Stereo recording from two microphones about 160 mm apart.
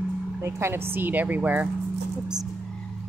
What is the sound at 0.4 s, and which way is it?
Speech, 15° right (ahead or behind).